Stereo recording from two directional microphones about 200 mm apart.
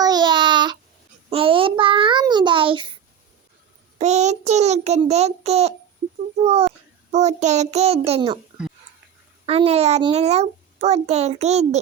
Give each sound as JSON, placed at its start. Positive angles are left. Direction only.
{"t": 0.0, "sound": "child singing", "side_deg": -20}
{"t": 3.9, "sound": "a child's voice", "side_deg": -35}
{"t": 9.5, "sound": "a child's voice", "side_deg": -30}